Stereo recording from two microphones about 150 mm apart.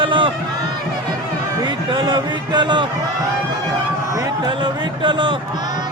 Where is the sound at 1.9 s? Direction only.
30° right (ahead or behind).